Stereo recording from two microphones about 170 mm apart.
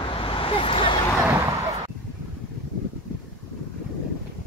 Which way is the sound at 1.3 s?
15° right (ahead or behind).